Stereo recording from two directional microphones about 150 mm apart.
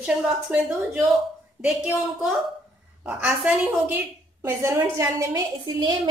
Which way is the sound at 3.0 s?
10° right (ahead or behind).